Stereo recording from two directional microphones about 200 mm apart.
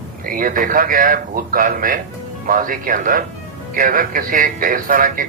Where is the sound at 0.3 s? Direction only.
45° right (ahead or behind).